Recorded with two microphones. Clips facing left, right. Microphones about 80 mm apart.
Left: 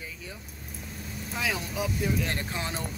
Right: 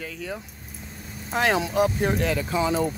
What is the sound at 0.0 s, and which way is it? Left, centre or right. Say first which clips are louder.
Speech: right 9 dB; right.